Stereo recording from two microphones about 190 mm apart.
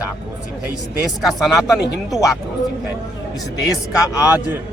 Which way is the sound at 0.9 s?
Centre (ahead or behind).